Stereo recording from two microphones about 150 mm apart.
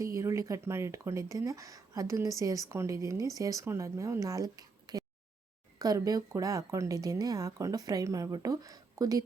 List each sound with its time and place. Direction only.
0.0 s speech: 20° right (ahead or behind)